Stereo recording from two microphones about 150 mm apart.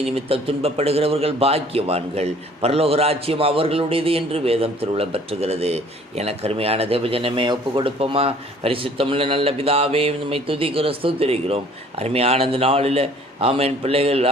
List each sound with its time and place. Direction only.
0.0 s a man's voice: 40° right (ahead or behind)